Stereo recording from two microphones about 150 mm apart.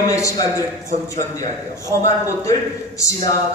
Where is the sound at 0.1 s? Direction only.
20° left (ahead or behind).